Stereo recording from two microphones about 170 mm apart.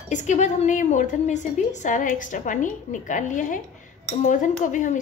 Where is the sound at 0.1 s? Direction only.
45° left (ahead or behind).